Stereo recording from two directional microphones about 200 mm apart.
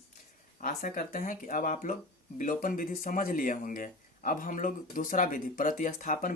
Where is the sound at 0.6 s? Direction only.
45° left (ahead or behind).